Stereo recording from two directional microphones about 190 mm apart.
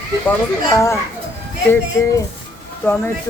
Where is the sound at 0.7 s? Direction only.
15° left (ahead or behind).